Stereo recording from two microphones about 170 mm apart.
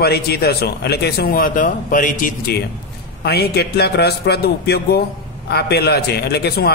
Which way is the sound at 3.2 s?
70° left (ahead or behind).